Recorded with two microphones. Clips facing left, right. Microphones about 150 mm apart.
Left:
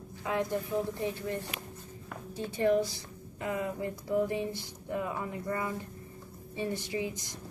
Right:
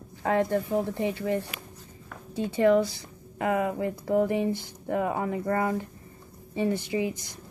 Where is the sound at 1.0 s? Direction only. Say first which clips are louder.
Right 6 dB; 90° right; by 5.7 s 70° right (ahead or behind).